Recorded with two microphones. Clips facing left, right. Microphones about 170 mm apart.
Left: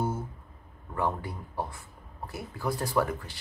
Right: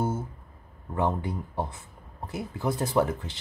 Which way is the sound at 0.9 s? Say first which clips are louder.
Right 3 dB; 20° right (ahead or behind).